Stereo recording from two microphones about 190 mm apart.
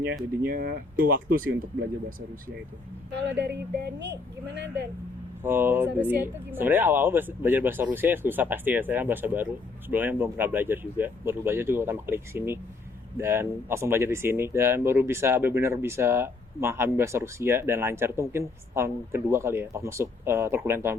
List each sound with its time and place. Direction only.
0.4 s speech: 50° right (ahead or behind)
3.1 s speech: 65° right (ahead or behind)
5.4 s speech: 10° right (ahead or behind)